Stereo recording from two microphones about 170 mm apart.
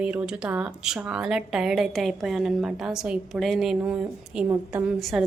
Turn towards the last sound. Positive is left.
turn(degrees=0)  # may be behind; listen again after turning